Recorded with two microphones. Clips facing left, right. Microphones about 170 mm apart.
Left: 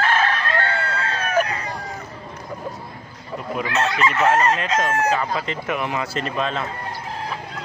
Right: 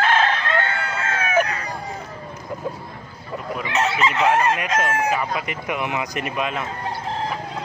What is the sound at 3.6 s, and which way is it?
Speech, 15° right (ahead or behind).